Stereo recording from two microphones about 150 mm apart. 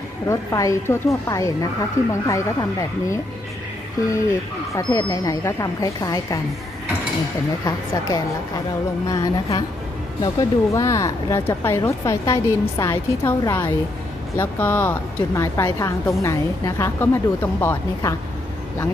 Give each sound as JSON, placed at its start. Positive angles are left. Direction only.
{"t": 0.3, "sound": "speech", "side_deg": 20}
{"t": 4.7, "sound": "speech", "side_deg": 20}
{"t": 7.6, "sound": "speech", "side_deg": 25}
{"t": 14.3, "sound": "a woman's voice", "side_deg": 15}